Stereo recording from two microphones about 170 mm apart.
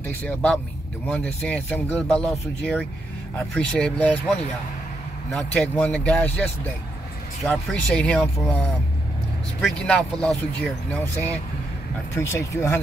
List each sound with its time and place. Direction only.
0.0 s a man's voice: 10° left (ahead or behind)
3.3 s speech: 5° left (ahead or behind)
5.3 s speech: 10° left (ahead or behind)
12.2 s speech: 15° left (ahead or behind)